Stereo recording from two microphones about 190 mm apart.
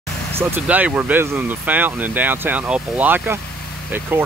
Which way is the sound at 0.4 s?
10° right (ahead or behind).